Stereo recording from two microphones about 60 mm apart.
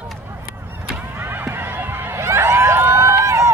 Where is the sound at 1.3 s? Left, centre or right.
Right.